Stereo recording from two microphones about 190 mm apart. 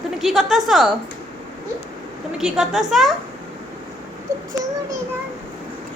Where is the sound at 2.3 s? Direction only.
Centre (ahead or behind).